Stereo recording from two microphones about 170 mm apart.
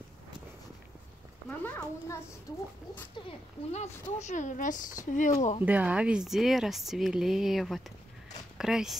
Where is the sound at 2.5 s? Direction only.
20° left (ahead or behind).